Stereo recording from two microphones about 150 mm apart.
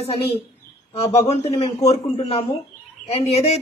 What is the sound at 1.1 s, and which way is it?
A man's voice, 45° left (ahead or behind).